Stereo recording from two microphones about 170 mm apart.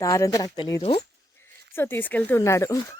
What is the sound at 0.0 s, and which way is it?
Speech, 20° left (ahead or behind).